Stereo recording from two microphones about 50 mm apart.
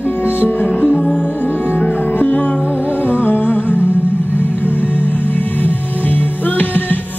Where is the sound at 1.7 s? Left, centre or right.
Left.